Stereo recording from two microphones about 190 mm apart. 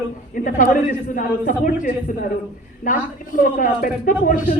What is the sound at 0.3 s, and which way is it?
A man's voice, 45° left (ahead or behind).